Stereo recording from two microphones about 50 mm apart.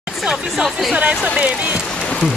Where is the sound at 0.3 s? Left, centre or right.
Centre.